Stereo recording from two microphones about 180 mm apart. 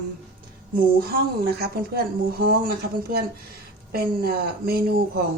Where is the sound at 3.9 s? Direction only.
55° right (ahead or behind).